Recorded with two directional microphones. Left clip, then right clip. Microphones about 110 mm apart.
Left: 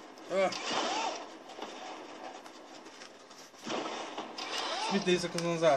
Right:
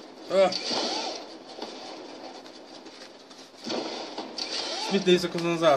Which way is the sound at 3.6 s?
25° right (ahead or behind).